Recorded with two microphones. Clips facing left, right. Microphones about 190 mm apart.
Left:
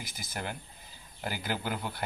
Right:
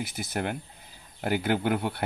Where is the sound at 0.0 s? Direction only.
65° right (ahead or behind).